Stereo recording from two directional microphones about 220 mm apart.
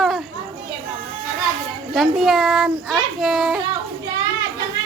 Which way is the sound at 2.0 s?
Centre (ahead or behind).